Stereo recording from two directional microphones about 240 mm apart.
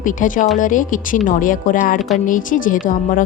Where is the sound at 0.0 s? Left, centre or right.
Left.